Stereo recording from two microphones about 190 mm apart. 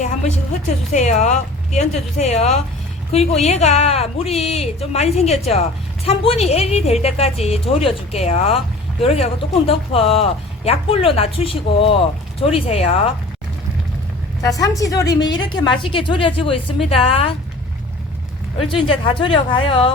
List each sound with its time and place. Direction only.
0.9 s a woman's voice: 40° left (ahead or behind)
14.4 s a woman's voice: 20° left (ahead or behind)
18.7 s a woman's voice: 25° left (ahead or behind)